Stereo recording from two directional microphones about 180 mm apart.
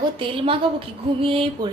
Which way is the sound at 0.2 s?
30° right (ahead or behind).